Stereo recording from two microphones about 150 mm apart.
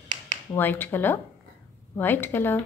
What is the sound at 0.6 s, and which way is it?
Speech, 15° left (ahead or behind).